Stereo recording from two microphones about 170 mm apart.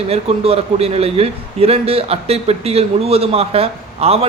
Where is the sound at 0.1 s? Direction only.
35° right (ahead or behind).